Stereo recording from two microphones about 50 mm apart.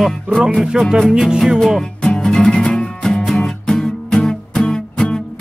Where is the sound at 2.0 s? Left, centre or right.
Centre.